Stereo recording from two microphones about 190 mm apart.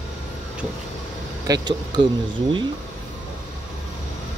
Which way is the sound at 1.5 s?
25° right (ahead or behind).